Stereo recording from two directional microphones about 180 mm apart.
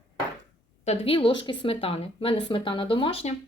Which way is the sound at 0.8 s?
35° left (ahead or behind).